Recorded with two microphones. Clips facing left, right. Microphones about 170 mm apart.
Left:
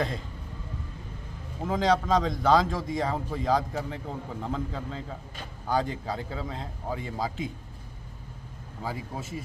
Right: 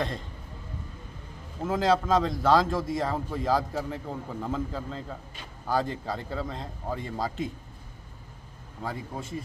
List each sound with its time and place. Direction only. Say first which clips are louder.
1.6 s a man's voice: even; 5° right (ahead or behind)
8.8 s a man's voice: even; 5° left (ahead or behind)